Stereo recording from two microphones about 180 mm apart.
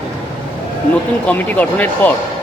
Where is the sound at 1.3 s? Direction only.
10° left (ahead or behind).